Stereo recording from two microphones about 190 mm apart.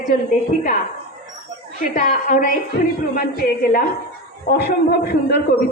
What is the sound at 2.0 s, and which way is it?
A woman's voice, 45° left (ahead or behind).